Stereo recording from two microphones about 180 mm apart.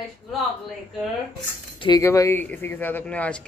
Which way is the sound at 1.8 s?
20° left (ahead or behind).